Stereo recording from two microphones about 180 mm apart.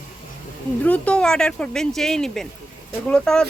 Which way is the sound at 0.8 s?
10° left (ahead or behind).